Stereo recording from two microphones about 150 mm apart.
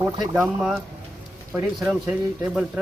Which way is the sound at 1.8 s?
5° right (ahead or behind).